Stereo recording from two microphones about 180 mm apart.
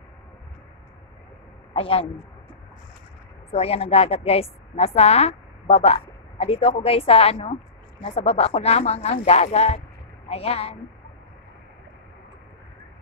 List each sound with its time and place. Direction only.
1.7 s speech: 30° left (ahead or behind)
3.5 s a woman's voice: 35° left (ahead or behind)